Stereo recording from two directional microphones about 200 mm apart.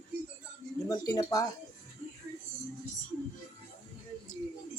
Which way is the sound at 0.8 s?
15° left (ahead or behind).